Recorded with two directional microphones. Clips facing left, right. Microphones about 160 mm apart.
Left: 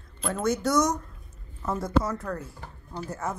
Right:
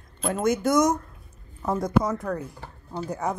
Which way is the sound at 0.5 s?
50° right (ahead or behind).